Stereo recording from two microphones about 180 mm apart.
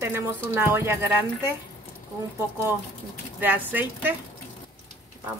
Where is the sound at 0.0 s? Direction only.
10° right (ahead or behind).